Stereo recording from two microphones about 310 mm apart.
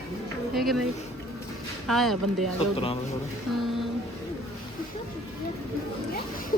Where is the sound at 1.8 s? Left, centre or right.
Centre.